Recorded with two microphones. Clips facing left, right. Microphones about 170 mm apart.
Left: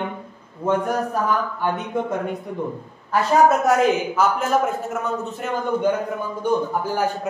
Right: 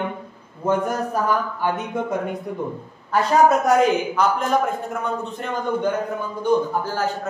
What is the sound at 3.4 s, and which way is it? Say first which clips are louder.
Speech: right 1 dB; centre (ahead or behind).